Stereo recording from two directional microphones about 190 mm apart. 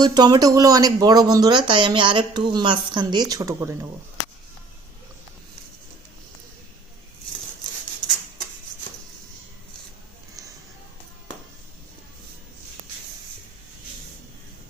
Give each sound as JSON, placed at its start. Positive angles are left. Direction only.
{"t": 0.0, "sound": "speech", "side_deg": -20}